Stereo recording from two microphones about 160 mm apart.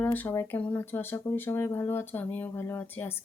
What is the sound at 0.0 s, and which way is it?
Speech, 10° left (ahead or behind).